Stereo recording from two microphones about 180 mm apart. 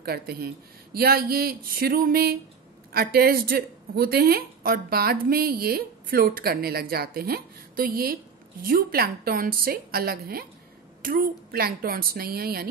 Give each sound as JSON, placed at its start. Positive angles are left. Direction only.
{"t": 0.0, "sound": "speech", "side_deg": -60}